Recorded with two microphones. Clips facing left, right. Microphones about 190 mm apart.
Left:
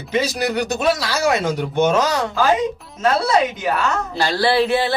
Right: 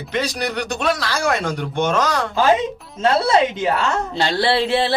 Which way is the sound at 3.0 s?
25° right (ahead or behind).